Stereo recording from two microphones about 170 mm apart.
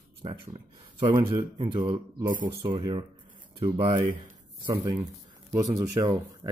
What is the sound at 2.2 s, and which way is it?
Speech, 50° right (ahead or behind).